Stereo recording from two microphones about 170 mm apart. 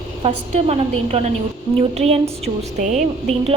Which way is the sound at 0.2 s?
40° right (ahead or behind).